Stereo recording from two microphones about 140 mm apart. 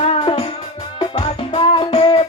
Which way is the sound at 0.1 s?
40° left (ahead or behind).